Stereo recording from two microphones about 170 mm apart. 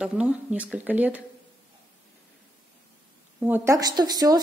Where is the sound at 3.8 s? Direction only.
25° right (ahead or behind).